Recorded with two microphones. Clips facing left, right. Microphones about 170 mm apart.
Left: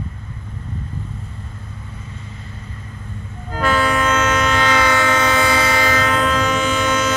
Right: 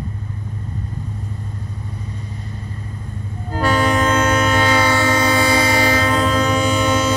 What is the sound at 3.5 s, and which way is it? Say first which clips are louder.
Train: right 1 dB; 35° right (ahead or behind).